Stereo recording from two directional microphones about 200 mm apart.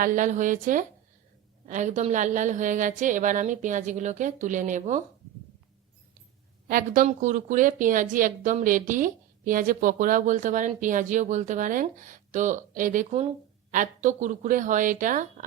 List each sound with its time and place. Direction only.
0.0 s speech: 40° right (ahead or behind)
6.7 s speech: 45° right (ahead or behind)